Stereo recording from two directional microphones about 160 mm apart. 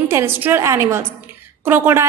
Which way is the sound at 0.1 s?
15° right (ahead or behind).